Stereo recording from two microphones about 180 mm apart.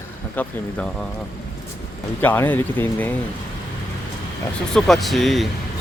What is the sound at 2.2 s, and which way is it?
Speech, 10° left (ahead or behind).